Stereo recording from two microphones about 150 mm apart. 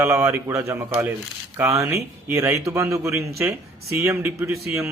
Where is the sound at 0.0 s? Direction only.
20° right (ahead or behind).